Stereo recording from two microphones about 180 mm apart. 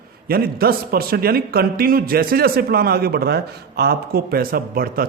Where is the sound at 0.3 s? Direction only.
60° right (ahead or behind).